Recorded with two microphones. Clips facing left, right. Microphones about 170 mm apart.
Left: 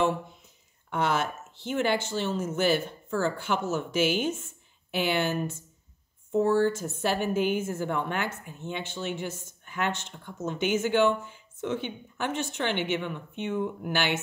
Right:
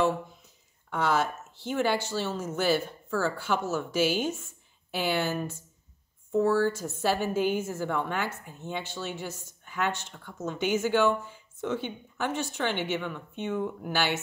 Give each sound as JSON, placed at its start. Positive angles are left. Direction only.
{"t": 0.9, "sound": "speech", "side_deg": 20}